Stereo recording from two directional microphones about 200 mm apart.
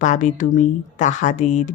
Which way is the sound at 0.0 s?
40° left (ahead or behind).